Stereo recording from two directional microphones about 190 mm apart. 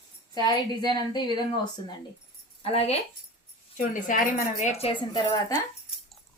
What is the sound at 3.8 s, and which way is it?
A woman's voice, 45° left (ahead or behind).